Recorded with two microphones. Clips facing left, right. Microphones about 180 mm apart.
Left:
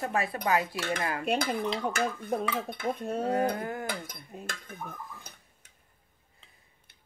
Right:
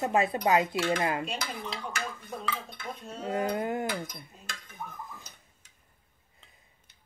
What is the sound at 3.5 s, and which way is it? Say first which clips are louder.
Speech: right 4 dB; 20° right (ahead or behind).